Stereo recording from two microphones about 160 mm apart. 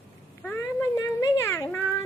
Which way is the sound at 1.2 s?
15° left (ahead or behind).